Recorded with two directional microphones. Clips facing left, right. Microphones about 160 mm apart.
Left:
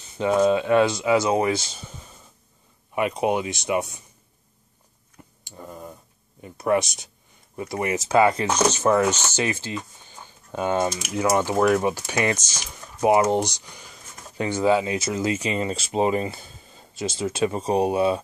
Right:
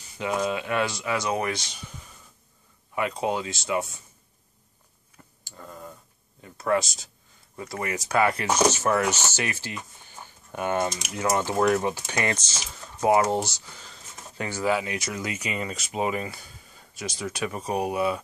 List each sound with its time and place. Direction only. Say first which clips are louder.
0.0 s speech: left 8 dB; 30° left (ahead or behind)
5.4 s tick: left 3 dB; 20° left (ahead or behind)
6.4 s speech: left 3 dB; 20° left (ahead or behind)